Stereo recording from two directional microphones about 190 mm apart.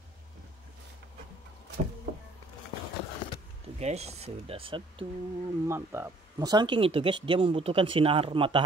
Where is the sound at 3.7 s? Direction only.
35° right (ahead or behind).